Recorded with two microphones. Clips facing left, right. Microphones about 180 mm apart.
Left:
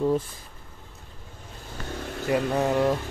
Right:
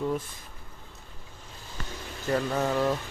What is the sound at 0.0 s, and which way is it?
Speech, 30° left (ahead or behind).